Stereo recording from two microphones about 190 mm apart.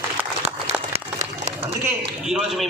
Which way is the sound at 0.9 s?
35° right (ahead or behind).